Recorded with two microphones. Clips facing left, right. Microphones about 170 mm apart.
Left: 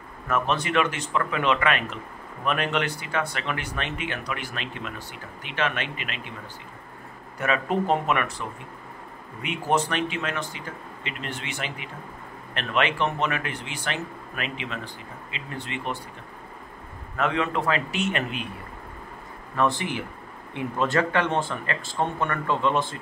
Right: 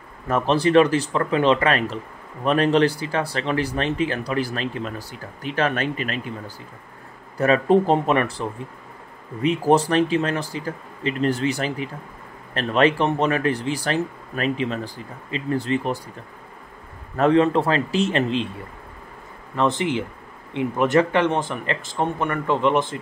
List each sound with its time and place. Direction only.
0.3 s speech: 35° right (ahead or behind)
17.2 s speech: 35° right (ahead or behind)
19.5 s speech: 20° right (ahead or behind)